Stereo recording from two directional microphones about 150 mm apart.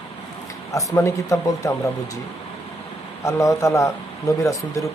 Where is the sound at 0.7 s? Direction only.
20° left (ahead or behind).